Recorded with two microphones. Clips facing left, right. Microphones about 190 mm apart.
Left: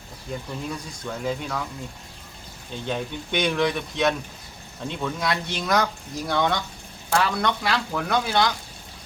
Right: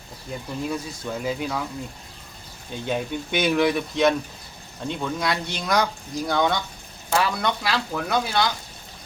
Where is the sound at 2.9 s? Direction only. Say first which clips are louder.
Right 2 dB; 5° right (ahead or behind).